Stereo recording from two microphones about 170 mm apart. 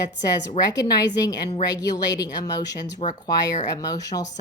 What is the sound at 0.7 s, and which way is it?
Speech, 20° left (ahead or behind).